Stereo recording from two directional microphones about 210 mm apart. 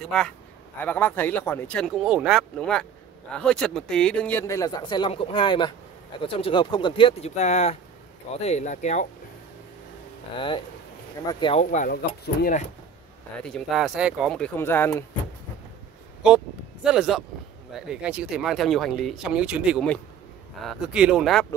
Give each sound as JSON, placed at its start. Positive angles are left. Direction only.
{"t": 0.0, "sound": "speech", "side_deg": 5}
{"t": 10.3, "sound": "speech", "side_deg": 25}
{"t": 11.7, "sound": "speech", "side_deg": 35}
{"t": 13.4, "sound": "speech", "side_deg": 5}
{"t": 16.2, "sound": "speech", "side_deg": -5}